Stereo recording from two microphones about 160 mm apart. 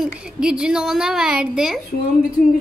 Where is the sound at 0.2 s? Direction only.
5° right (ahead or behind).